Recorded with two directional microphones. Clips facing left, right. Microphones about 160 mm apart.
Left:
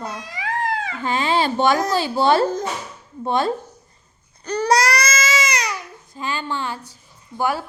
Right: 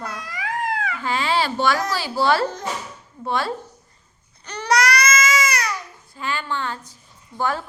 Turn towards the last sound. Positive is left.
turn(degrees=10)  # may be behind; listen again after turning